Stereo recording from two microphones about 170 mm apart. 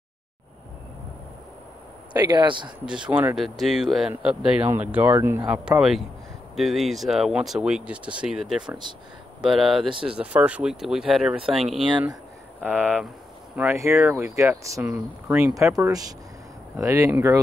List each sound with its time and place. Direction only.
2.1 s speech: 25° right (ahead or behind)
2.8 s speech: 5° right (ahead or behind)
12.6 s speech: 10° right (ahead or behind)